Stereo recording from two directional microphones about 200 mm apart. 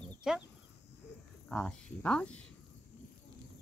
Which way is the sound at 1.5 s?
5° left (ahead or behind).